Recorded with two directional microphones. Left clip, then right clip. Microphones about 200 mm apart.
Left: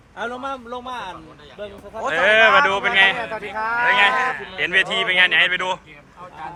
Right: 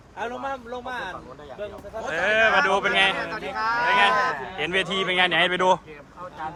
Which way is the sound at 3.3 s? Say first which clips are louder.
Left 2 dB; 30° left (ahead or behind).